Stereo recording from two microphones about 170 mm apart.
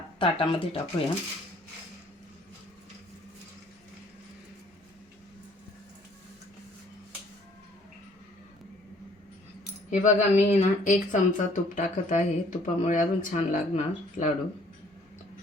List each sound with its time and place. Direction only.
0.2 s speech: 30° left (ahead or behind)
9.9 s a woman's voice: 45° left (ahead or behind)